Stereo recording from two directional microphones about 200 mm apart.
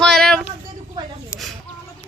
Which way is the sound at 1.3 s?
15° left (ahead or behind).